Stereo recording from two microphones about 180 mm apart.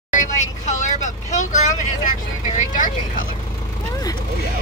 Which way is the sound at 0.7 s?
45° left (ahead or behind).